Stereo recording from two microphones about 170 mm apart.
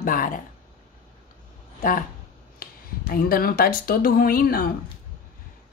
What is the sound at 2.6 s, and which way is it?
Speech, 60° left (ahead or behind).